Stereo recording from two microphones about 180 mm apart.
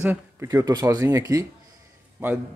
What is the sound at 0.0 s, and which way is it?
Speech, 10° right (ahead or behind).